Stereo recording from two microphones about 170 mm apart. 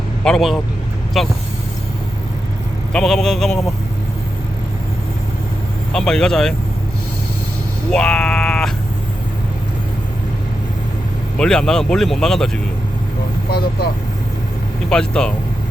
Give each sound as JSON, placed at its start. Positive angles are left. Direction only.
{"t": 0.3, "sound": "speech", "side_deg": 0}
{"t": 2.9, "sound": "speech", "side_deg": 5}
{"t": 5.9, "sound": "speech", "side_deg": 5}
{"t": 7.9, "sound": "speech", "side_deg": 5}
{"t": 11.3, "sound": "speech", "side_deg": 5}
{"t": 13.5, "sound": "speech", "side_deg": 65}
{"t": 14.8, "sound": "speech", "side_deg": 5}